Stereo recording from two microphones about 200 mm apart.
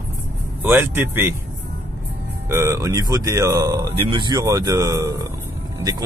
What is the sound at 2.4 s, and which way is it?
Speech, 15° right (ahead or behind).